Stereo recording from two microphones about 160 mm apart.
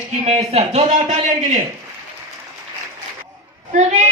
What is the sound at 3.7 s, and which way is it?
Speech, 50° right (ahead or behind).